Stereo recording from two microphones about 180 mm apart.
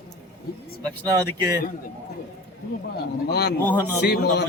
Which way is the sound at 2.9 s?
65° left (ahead or behind).